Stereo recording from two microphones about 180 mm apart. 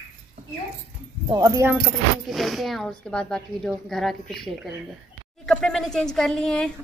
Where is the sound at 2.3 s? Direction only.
Centre (ahead or behind).